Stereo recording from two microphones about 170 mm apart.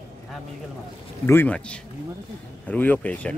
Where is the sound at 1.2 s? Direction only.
10° left (ahead or behind).